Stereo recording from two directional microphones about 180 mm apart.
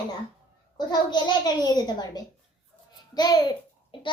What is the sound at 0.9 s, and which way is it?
A child's voice, 25° left (ahead or behind).